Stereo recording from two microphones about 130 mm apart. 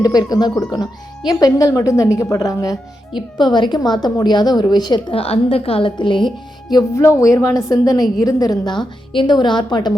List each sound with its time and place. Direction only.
0.0 s a woman's voice: 30° left (ahead or behind)